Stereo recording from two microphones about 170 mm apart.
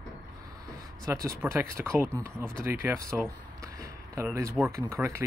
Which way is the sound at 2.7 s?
15° right (ahead or behind).